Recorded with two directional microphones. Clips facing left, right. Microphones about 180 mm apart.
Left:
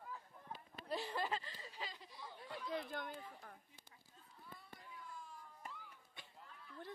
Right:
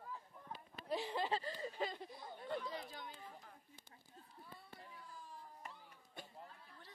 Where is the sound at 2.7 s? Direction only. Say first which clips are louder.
Left 5 dB; 55° left (ahead or behind).